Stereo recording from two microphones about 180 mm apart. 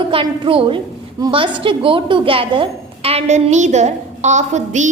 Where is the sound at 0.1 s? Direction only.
30° right (ahead or behind).